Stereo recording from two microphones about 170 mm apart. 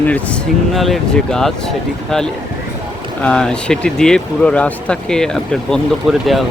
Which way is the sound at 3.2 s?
5° left (ahead or behind).